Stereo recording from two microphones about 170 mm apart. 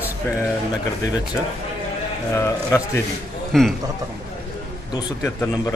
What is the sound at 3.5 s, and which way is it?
Speech, centre (ahead or behind).